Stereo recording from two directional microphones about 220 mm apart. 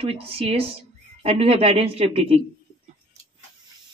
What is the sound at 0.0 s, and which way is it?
A woman's voice, 25° right (ahead or behind).